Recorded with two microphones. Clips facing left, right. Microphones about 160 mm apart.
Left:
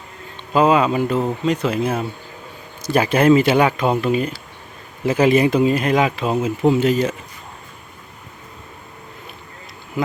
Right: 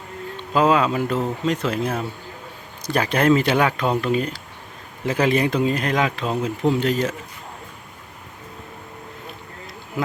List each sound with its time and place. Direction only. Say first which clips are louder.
0.5 s speech: left 3 dB; centre (ahead or behind)